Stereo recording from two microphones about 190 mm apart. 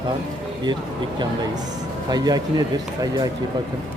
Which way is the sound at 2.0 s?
20° right (ahead or behind).